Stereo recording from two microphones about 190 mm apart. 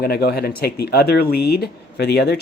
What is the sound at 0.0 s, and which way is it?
Speech, 55° left (ahead or behind).